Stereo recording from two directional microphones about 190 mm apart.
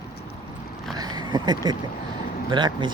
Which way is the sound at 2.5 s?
25° right (ahead or behind).